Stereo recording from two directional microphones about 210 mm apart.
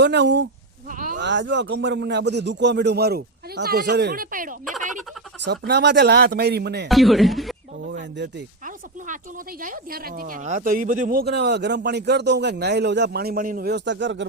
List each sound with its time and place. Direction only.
0.0 s speech: 55° right (ahead or behind)
0.9 s a sound: 40° right (ahead or behind)
1.2 s speech: 55° right (ahead or behind); by 4.5 s 40° right (ahead or behind)
5.5 s a woman's voice: 50° right (ahead or behind)
6.8 s speech: centre (ahead or behind)
7.9 s a woman's voice: 45° right (ahead or behind)